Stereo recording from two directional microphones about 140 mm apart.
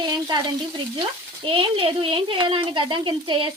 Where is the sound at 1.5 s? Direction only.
40° right (ahead or behind).